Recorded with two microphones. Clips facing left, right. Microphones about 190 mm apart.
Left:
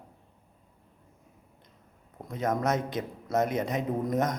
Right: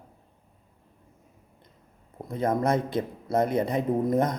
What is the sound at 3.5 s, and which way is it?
Speech, 55° right (ahead or behind).